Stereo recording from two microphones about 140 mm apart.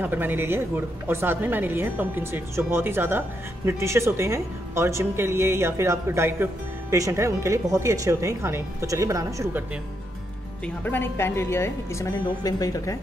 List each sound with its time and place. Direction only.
0.0 s a woman's voice: 15° right (ahead or behind)
10.6 s a woman's voice: 15° left (ahead or behind)